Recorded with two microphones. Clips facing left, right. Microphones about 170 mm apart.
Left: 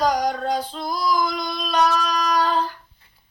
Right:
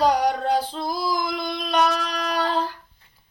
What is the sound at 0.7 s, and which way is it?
Female singing, 25° right (ahead or behind).